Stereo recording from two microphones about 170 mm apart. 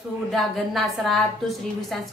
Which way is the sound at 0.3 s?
Centre (ahead or behind).